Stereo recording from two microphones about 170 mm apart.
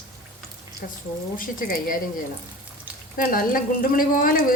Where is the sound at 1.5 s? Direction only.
55° left (ahead or behind).